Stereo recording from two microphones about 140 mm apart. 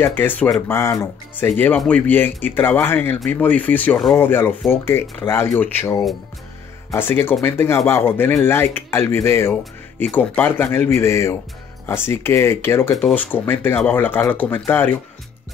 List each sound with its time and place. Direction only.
0.0 s speech: 15° left (ahead or behind)